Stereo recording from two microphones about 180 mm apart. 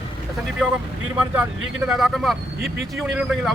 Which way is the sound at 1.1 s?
5° right (ahead or behind).